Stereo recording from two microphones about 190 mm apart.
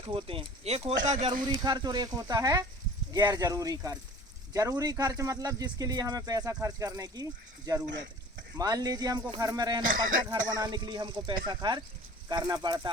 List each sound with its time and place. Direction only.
0.0 s speech: 30° right (ahead or behind)
1.5 s speech: 20° right (ahead or behind)
8.5 s speech: 20° right (ahead or behind)
9.9 s speech: 45° right (ahead or behind)
10.6 s speech: 25° right (ahead or behind)